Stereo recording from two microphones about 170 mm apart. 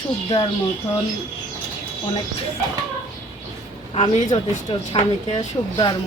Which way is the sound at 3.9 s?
40° left (ahead or behind).